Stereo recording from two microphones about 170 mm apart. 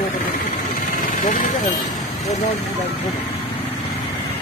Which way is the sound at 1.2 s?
50° left (ahead or behind).